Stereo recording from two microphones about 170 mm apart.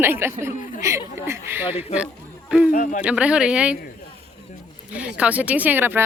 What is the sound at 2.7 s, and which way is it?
Speech, 50° left (ahead or behind).